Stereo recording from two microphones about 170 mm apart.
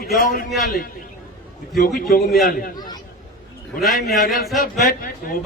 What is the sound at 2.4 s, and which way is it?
Speech, 60° left (ahead or behind).